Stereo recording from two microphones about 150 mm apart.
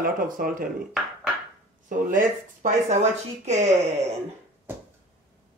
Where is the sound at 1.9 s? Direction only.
65° right (ahead or behind).